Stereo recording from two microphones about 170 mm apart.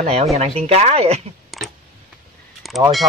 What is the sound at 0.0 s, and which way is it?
Speech, 40° right (ahead or behind).